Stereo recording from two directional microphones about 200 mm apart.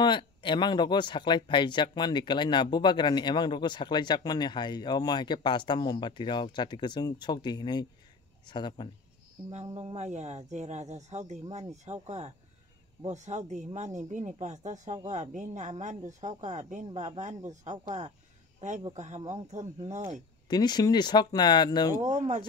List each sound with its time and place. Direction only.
0.0 s speech: 25° left (ahead or behind)
9.8 s speech: 30° right (ahead or behind)
20.4 s speech: 20° left (ahead or behind)
22.0 s speech: 35° right (ahead or behind)